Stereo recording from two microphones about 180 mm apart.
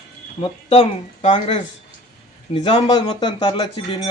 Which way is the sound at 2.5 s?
25° left (ahead or behind).